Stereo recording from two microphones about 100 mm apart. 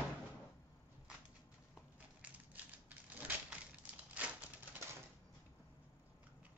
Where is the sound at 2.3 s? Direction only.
15° right (ahead or behind).